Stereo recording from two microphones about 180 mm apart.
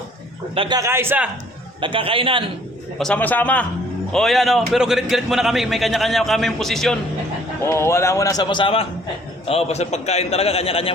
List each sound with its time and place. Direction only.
0.5 s a man's voice: 30° right (ahead or behind)
0.8 s a man's voice: 15° right (ahead or behind)
1.8 s a man's voice: 30° right (ahead or behind)
3.0 s a man's voice: 5° left (ahead or behind)
7.6 s a man's voice: 15° left (ahead or behind); by 10.9 s 30° left (ahead or behind)